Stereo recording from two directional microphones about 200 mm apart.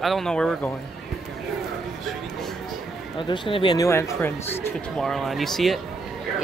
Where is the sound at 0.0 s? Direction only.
Centre (ahead or behind).